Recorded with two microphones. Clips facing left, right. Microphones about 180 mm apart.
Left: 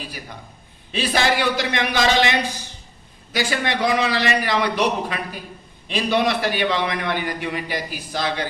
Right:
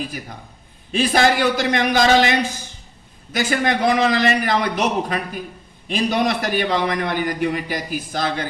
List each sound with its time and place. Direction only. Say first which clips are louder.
0.0 s a man's voice: right 5 dB; 45° right (ahead or behind)